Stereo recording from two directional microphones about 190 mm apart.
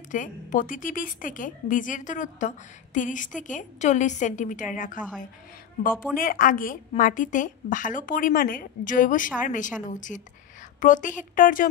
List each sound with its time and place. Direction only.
0.1 s a woman's voice: 45° left (ahead or behind)
6.1 s a woman's voice: 45° left (ahead or behind)